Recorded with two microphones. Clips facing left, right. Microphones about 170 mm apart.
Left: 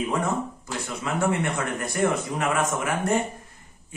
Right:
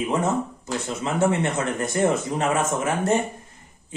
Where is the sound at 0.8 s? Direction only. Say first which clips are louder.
Right 3 dB; 25° right (ahead or behind).